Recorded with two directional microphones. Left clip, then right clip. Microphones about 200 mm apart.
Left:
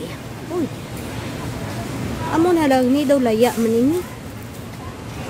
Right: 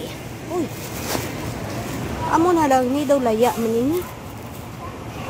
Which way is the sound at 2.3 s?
20° left (ahead or behind).